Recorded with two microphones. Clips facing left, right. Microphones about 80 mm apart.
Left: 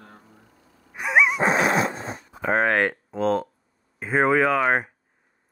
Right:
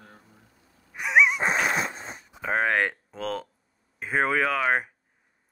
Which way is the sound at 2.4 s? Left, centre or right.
Centre.